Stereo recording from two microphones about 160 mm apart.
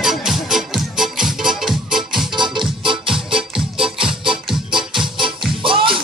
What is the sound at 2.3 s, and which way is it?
Music, 30° right (ahead or behind).